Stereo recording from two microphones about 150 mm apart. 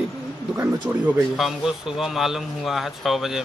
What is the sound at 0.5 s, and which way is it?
Speech, 15° right (ahead or behind).